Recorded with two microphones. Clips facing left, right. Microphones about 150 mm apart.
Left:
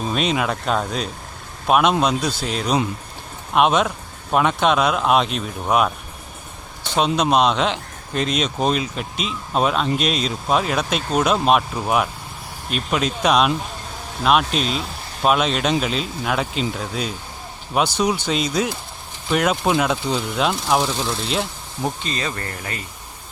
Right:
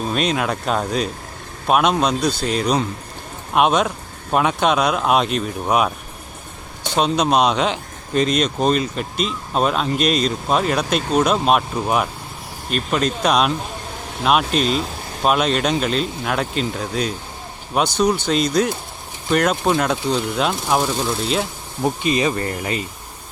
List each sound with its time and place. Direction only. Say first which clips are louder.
0.0 s speech: right 1 dB; centre (ahead or behind)
6.9 s speech: right 1 dB; centre (ahead or behind); by 22.8 s 20° right (ahead or behind)